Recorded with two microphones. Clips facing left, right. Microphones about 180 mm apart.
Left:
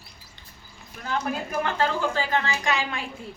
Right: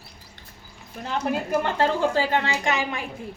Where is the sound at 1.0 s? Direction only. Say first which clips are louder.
Right 2 dB; 30° right (ahead or behind).